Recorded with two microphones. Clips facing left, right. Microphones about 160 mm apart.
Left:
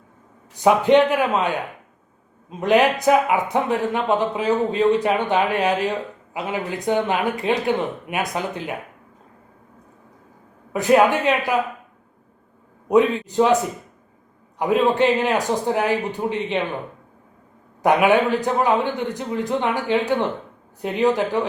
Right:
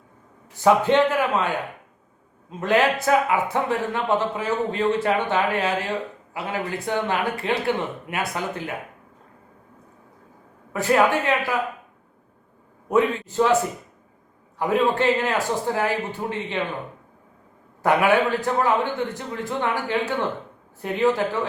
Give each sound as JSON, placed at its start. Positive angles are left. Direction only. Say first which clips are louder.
{"t": 0.5, "sound": "a man's voice", "louder": "left 3 dB", "side_deg": 15}
{"t": 10.7, "sound": "a man's voice", "louder": "left 3 dB", "side_deg": 20}
{"t": 12.9, "sound": "a man's voice", "louder": "left 4 dB", "side_deg": 15}
{"t": 14.6, "sound": "a man's voice", "louder": "left 3 dB", "side_deg": 15}
{"t": 17.8, "sound": "a man's voice", "louder": "left 2 dB", "side_deg": 15}